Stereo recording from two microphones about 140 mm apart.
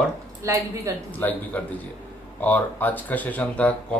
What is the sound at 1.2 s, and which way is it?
Speech, 10° left (ahead or behind).